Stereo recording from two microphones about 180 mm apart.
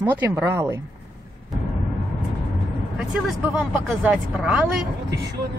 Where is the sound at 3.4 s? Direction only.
10° right (ahead or behind).